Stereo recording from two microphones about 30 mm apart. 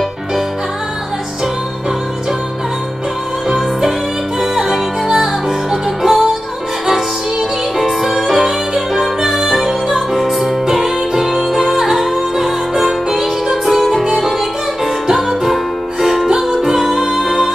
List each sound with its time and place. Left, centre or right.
3.4 s music: centre
15.0 s music: centre
15.4 s music: centre